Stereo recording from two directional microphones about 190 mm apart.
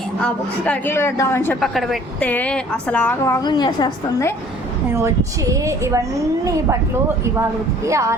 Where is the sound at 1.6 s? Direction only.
Centre (ahead or behind).